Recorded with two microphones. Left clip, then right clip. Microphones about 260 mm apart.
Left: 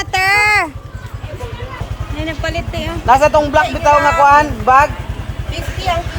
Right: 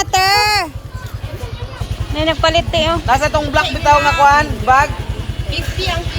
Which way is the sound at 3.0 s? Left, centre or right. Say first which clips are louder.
Left 5 dB; left.